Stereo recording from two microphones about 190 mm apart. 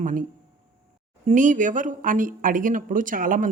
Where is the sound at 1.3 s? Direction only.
40° right (ahead or behind).